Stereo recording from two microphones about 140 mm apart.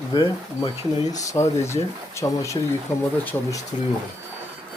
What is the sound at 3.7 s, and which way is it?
Speech, 45° left (ahead or behind).